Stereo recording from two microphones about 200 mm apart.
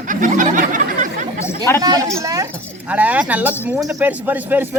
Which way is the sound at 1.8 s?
20° right (ahead or behind).